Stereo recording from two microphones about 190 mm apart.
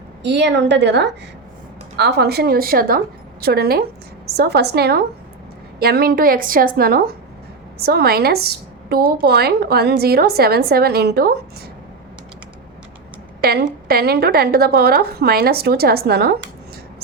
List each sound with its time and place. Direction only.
0.2 s a woman's voice: 65° right (ahead or behind)
13.4 s a woman's voice: 55° right (ahead or behind)